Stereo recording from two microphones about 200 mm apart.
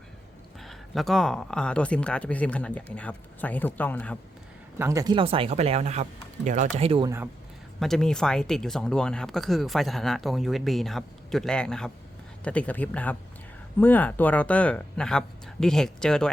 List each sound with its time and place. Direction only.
0.6 s speech: centre (ahead or behind)
4.8 s speech: 15° right (ahead or behind)
7.8 s speech: centre (ahead or behind)